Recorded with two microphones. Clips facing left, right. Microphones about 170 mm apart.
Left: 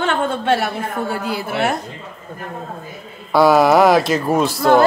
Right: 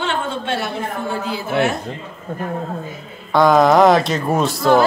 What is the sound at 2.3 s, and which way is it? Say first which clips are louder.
Speech: right 7 dB; 60° right (ahead or behind).